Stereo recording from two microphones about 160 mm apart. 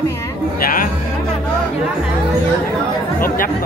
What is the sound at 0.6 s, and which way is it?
Speech, 65° left (ahead or behind).